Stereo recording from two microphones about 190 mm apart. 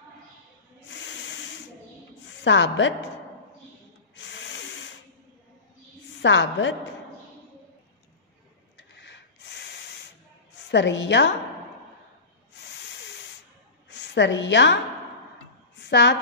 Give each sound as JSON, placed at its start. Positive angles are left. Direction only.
{"t": 0.8, "sound": "snake", "side_deg": 75}
{"t": 2.4, "sound": "a woman's voice", "side_deg": 75}
{"t": 4.1, "sound": "snort", "side_deg": 70}
{"t": 6.2, "sound": "a woman's voice", "side_deg": 75}
{"t": 8.7, "sound": "rub", "side_deg": 65}
{"t": 10.7, "sound": "a woman's voice", "side_deg": 70}
{"t": 12.7, "sound": "sanding", "side_deg": 65}
{"t": 13.8, "sound": "a woman's voice", "side_deg": 65}
{"t": 15.8, "sound": "a woman's voice", "side_deg": 65}